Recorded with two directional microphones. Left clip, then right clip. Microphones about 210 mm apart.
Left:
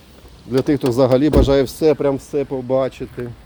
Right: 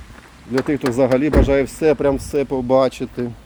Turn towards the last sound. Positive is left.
turn(degrees=-15)  # may be behind; listen again after turning